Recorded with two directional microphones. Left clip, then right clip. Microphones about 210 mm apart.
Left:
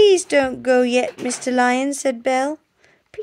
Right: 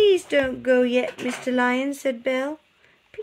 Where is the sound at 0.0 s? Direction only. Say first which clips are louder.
Left 4 dB; 55° left (ahead or behind).